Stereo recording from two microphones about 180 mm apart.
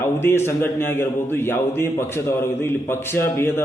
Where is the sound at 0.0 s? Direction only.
15° left (ahead or behind).